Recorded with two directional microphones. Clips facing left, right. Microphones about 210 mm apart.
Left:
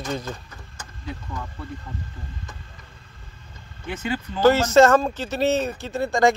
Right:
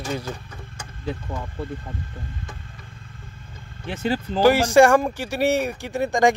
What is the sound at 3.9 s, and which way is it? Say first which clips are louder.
Speech: right 3 dB; 35° right (ahead or behind).